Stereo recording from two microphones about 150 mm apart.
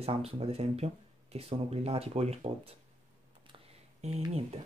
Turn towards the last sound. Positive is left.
turn(degrees=-45)  # may be behind; listen again after turning